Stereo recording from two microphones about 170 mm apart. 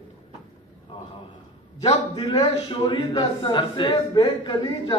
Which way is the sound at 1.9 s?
25° left (ahead or behind).